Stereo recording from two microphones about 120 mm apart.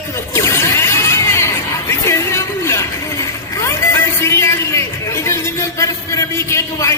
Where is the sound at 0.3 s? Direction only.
20° left (ahead or behind).